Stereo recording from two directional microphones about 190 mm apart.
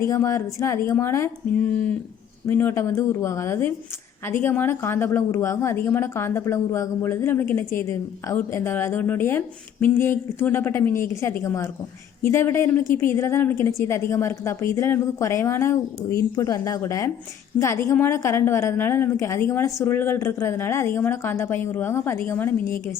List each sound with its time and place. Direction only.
0.0 s a woman's voice: 15° left (ahead or behind)
2.5 s a woman's voice: 10° left (ahead or behind)